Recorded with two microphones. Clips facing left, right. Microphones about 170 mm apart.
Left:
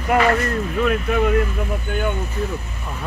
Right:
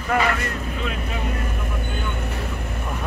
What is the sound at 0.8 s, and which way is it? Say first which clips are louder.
Speech: left 11 dB; 60° left (ahead or behind).